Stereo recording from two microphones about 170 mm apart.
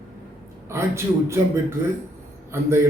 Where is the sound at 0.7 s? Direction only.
15° right (ahead or behind).